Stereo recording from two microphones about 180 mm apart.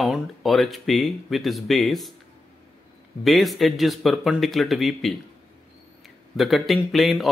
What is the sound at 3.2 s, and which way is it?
A man's voice, centre (ahead or behind).